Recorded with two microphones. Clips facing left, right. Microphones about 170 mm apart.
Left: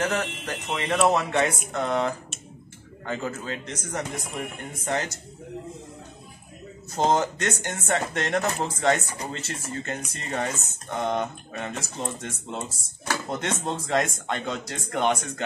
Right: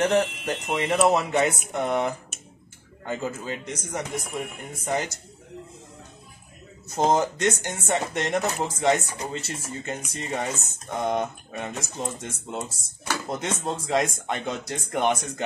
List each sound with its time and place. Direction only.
0.0 s speech: 25° right (ahead or behind); by 5.1 s 5° right (ahead or behind)
7.0 s speech: centre (ahead or behind)